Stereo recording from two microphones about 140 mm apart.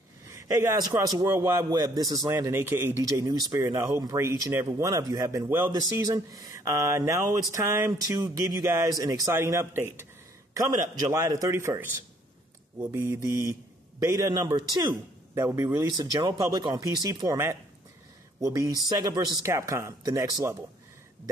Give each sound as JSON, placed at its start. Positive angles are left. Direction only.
{"t": 0.3, "sound": "a man's voice", "side_deg": -20}
{"t": 2.3, "sound": "speech", "side_deg": -15}
{"t": 15.5, "sound": "speech", "side_deg": -20}
{"t": 15.9, "sound": "speech", "side_deg": -30}